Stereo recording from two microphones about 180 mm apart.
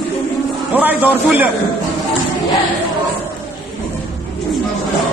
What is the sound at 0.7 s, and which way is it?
Speech, 10° right (ahead or behind).